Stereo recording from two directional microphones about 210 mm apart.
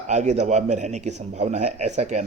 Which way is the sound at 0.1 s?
35° right (ahead or behind).